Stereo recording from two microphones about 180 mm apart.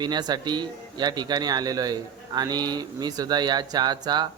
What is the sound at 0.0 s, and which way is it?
Speech, 25° right (ahead or behind).